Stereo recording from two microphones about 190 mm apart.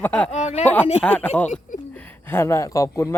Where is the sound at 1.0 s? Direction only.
5° left (ahead or behind).